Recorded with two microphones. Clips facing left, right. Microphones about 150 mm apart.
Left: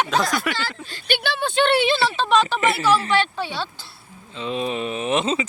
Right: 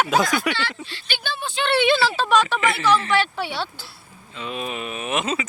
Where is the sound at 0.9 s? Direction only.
50° left (ahead or behind); by 1.5 s 70° left (ahead or behind).